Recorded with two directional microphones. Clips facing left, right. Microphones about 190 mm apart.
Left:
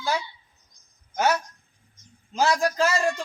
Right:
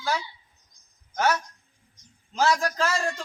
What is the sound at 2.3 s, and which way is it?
Speech, 10° left (ahead or behind).